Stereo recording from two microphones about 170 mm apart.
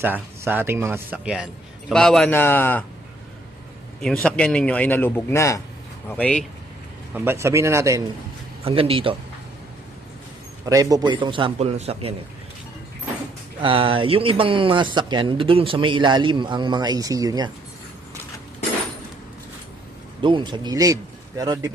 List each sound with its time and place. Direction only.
0.0 s a man's voice: 10° right (ahead or behind); by 2.8 s 10° left (ahead or behind)
4.0 s a man's voice: 5° left (ahead or behind)
7.1 s a man's voice: 15° right (ahead or behind)
8.6 s speech: 35° right (ahead or behind)
10.7 s speech: 20° right (ahead or behind); by 12.1 s 35° right (ahead or behind)
13.6 s speech: 30° right (ahead or behind)
20.2 s speech: 30° right (ahead or behind)